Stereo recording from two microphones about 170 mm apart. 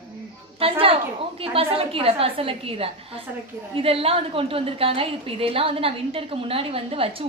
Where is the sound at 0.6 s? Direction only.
35° right (ahead or behind).